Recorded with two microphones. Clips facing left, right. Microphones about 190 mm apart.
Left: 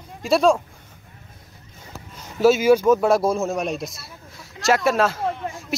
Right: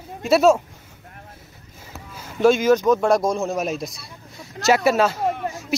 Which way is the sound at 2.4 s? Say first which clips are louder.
Left 1 dB; 5° left (ahead or behind).